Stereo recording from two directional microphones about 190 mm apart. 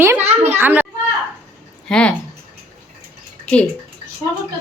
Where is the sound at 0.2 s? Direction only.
35° right (ahead or behind).